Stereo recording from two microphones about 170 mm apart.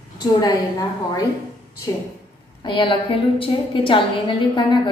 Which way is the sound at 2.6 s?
30° left (ahead or behind).